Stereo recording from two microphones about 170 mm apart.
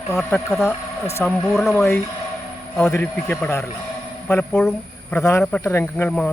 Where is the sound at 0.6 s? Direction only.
15° left (ahead or behind); by 1.8 s centre (ahead or behind).